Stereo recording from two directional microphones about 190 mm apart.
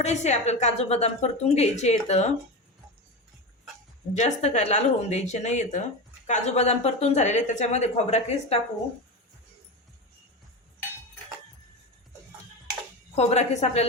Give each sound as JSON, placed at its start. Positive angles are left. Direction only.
{"t": 0.0, "sound": "speech", "side_deg": 35}
{"t": 4.2, "sound": "speech", "side_deg": 35}
{"t": 13.1, "sound": "speech", "side_deg": 35}